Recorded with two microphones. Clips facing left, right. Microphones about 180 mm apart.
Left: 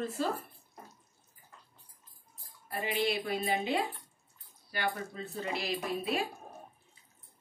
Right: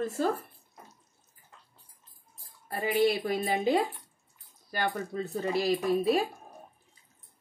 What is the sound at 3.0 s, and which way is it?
A woman's voice, 40° right (ahead or behind).